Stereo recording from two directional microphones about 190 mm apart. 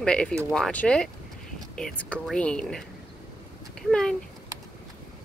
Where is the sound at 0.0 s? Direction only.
5° left (ahead or behind).